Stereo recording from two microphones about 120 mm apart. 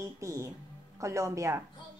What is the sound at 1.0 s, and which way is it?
Speech, 25° right (ahead or behind).